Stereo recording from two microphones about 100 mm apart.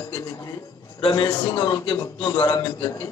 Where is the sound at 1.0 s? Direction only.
60° left (ahead or behind).